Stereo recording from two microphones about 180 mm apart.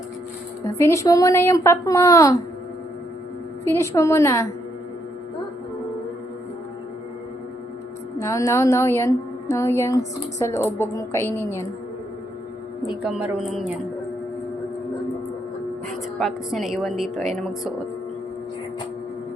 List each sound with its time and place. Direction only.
0.6 s a woman's voice: 15° left (ahead or behind)
3.6 s a woman's voice: 15° left (ahead or behind)
8.2 s a woman's voice: 20° left (ahead or behind)
13.0 s a woman's voice: 5° right (ahead or behind)
15.9 s a woman's voice: centre (ahead or behind)